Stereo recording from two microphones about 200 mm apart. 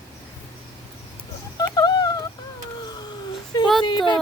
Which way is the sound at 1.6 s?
20° left (ahead or behind).